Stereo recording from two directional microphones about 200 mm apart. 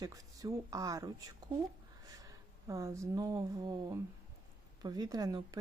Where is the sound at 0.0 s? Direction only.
15° right (ahead or behind).